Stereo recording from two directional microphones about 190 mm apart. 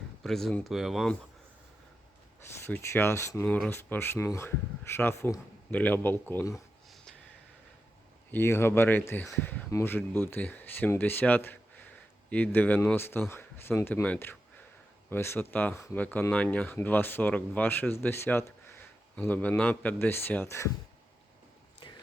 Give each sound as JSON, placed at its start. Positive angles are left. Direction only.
{"t": 0.2, "sound": "speech", "side_deg": 0}
{"t": 2.6, "sound": "speech", "side_deg": 10}
{"t": 6.9, "sound": "a sound", "side_deg": 5}
{"t": 8.3, "sound": "speech", "side_deg": 15}
{"t": 21.8, "sound": "whispering", "side_deg": 25}